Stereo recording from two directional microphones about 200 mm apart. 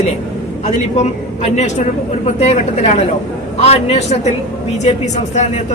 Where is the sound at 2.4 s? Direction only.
35° left (ahead or behind).